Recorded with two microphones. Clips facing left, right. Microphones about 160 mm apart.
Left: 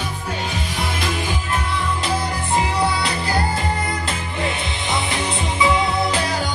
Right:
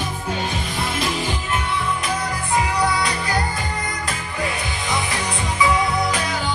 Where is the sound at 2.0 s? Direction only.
30° left (ahead or behind).